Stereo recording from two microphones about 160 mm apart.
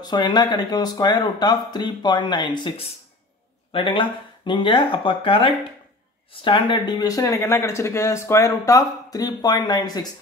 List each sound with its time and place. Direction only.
0.0 s speech: 25° left (ahead or behind)